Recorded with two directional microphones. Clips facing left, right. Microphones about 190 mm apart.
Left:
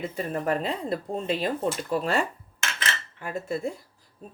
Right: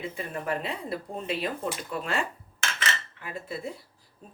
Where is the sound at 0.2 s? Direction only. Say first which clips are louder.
Left 6 dB; 40° left (ahead or behind).